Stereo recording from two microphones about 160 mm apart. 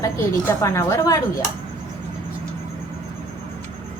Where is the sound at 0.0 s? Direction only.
20° left (ahead or behind).